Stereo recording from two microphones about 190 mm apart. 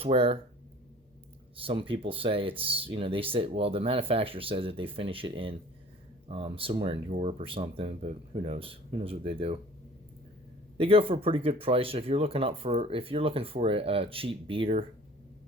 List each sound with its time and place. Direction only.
0.0 s speech: 30° right (ahead or behind)
1.5 s speech: 30° right (ahead or behind)
10.8 s speech: 30° right (ahead or behind)